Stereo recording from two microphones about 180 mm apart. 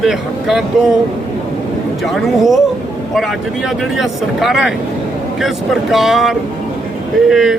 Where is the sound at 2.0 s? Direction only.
Centre (ahead or behind).